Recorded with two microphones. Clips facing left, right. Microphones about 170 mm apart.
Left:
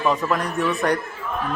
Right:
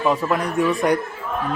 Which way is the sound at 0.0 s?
10° right (ahead or behind).